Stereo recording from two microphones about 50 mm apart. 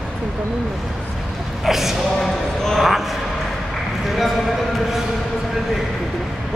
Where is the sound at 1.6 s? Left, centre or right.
Centre.